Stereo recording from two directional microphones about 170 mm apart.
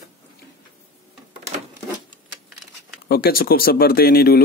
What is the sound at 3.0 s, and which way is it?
Speech, 65° left (ahead or behind).